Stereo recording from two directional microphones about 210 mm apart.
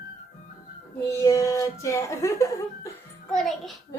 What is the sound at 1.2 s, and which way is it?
Speech, 15° left (ahead or behind).